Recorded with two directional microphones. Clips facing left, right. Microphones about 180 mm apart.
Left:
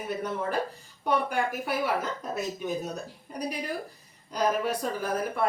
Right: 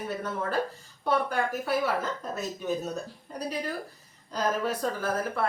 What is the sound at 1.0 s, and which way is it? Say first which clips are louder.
A woman's voice: even; 15° left (ahead or behind).